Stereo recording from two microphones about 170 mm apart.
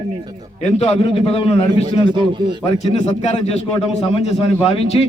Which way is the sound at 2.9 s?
40° left (ahead or behind).